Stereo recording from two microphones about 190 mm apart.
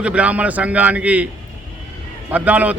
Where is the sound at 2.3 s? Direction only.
10° right (ahead or behind).